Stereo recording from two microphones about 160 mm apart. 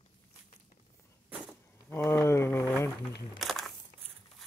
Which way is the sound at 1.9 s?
15° left (ahead or behind).